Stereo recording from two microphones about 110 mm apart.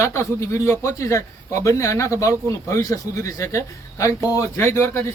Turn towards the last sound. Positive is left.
turn(degrees=25)  # may be behind; listen again after turning